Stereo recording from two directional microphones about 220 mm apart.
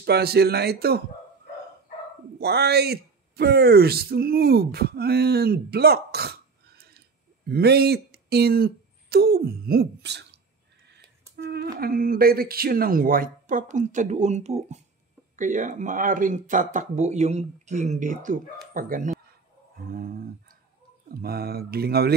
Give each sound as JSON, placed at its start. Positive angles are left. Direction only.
{"t": 0.0, "sound": "speech", "side_deg": -45}
{"t": 2.4, "sound": "speech", "side_deg": -45}
{"t": 7.4, "sound": "speech", "side_deg": -45}
{"t": 11.3, "sound": "a sound", "side_deg": -45}
{"t": 11.8, "sound": "speech", "side_deg": -40}
{"t": 19.9, "sound": "a sound", "side_deg": -40}
{"t": 21.1, "sound": "speech", "side_deg": -45}